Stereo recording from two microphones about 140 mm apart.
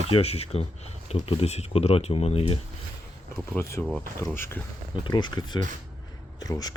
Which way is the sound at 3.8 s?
5° left (ahead or behind).